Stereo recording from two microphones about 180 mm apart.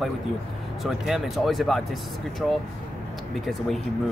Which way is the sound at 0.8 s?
Centre (ahead or behind).